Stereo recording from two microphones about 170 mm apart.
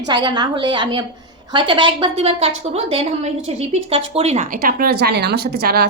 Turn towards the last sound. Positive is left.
turn(degrees=-65)  # may be behind; listen again after turning